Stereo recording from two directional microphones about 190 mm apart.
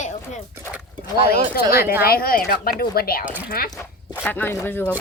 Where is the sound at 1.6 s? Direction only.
55° left (ahead or behind).